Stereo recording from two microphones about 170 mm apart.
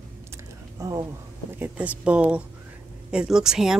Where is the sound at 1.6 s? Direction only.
10° right (ahead or behind).